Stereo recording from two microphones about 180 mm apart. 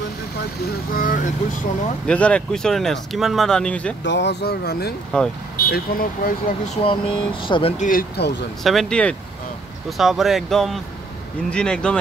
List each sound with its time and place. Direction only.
0.9 s speech: 50° left (ahead or behind)
2.0 s speech: 5° left (ahead or behind)
4.0 s speech: 80° left; by 4.9 s 60° left (ahead or behind)
5.1 s speech: 5° left (ahead or behind)
5.7 s speech: 55° left (ahead or behind)
6.7 s speech: 30° left (ahead or behind)
7.8 s speech: 50° left (ahead or behind)
8.6 s speech: centre (ahead or behind)